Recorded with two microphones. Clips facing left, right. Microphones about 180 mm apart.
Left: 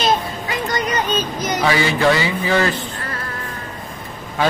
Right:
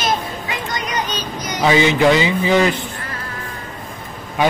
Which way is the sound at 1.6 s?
20° right (ahead or behind).